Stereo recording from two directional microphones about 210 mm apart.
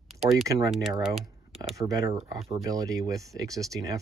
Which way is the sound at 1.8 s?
15° right (ahead or behind).